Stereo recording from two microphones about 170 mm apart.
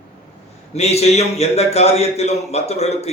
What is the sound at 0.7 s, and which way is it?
A man's voice, 40° left (ahead or behind).